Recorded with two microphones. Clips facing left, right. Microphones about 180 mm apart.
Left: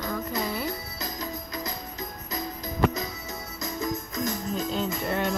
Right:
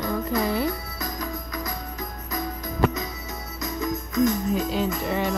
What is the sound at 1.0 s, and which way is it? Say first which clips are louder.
Music: right 3 dB; 25° left (ahead or behind).